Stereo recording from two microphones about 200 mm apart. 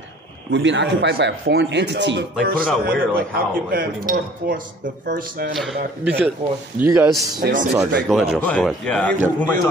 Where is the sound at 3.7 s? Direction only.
45° right (ahead or behind).